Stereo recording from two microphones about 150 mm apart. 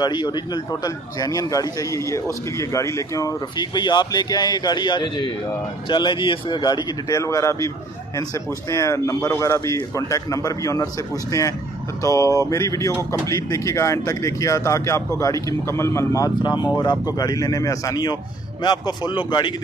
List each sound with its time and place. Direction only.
0.0 s speech: 30° left (ahead or behind)
12.0 s speech: 20° left (ahead or behind)